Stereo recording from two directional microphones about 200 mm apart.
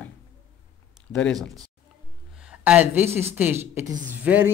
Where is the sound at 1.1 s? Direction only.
5° left (ahead or behind).